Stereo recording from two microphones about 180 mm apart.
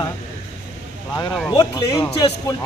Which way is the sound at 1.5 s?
20° left (ahead or behind).